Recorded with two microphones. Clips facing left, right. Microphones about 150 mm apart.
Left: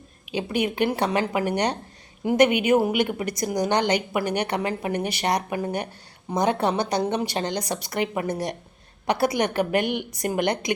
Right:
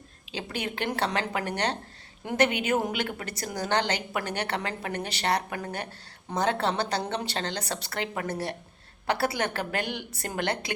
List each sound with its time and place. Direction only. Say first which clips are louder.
0.3 s a woman's voice: left 8 dB; 15° left (ahead or behind)